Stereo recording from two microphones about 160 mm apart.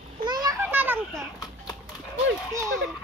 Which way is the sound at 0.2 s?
25° right (ahead or behind).